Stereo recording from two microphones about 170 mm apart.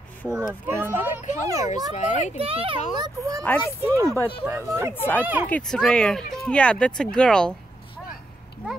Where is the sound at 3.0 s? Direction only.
20° right (ahead or behind).